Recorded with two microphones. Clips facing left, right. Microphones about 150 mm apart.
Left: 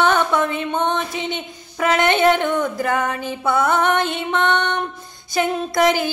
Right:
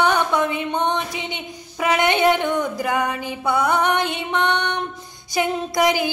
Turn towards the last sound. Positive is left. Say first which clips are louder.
# left 2 dB
turn(degrees=-15)  # may be behind; listen again after turning